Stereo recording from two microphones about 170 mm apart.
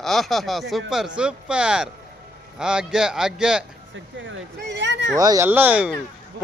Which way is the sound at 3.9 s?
90° right.